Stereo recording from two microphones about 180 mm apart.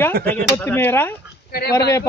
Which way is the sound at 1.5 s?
60° left (ahead or behind).